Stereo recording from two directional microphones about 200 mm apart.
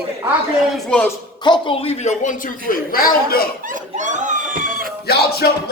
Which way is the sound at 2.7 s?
45° left (ahead or behind).